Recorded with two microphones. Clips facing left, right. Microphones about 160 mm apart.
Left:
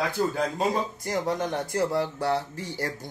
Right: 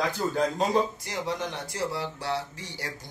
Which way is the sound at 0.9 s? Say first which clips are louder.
Left 5 dB; 50° left (ahead or behind).